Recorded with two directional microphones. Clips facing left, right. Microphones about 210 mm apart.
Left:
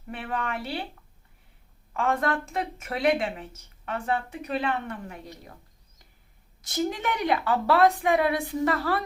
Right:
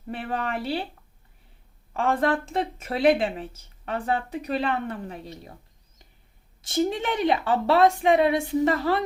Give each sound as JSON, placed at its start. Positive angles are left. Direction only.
{"t": 0.1, "sound": "a woman's voice", "side_deg": -35}
{"t": 1.9, "sound": "a woman's voice", "side_deg": -30}
{"t": 6.6, "sound": "a woman's voice", "side_deg": -30}